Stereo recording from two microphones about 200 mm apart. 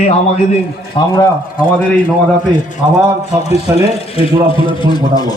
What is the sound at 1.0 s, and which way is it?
Speech, 25° left (ahead or behind).